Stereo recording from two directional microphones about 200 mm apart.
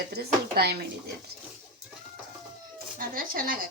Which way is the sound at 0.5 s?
50° right (ahead or behind).